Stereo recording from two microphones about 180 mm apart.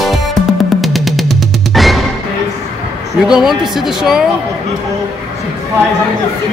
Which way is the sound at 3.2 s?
5° right (ahead or behind).